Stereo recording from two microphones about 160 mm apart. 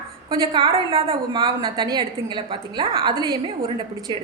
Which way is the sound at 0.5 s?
35° right (ahead or behind).